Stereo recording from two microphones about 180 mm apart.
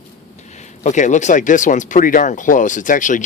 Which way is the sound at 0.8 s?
40° left (ahead or behind).